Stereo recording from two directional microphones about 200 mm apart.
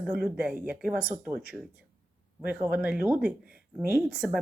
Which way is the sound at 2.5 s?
10° right (ahead or behind).